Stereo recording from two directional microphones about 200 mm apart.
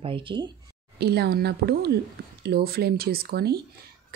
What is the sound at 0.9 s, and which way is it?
Speech, 55° right (ahead or behind).